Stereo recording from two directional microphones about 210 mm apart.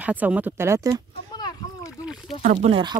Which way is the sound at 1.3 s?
20° left (ahead or behind).